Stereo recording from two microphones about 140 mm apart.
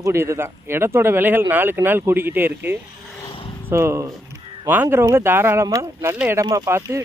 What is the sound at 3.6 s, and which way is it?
Speech, 20° right (ahead or behind).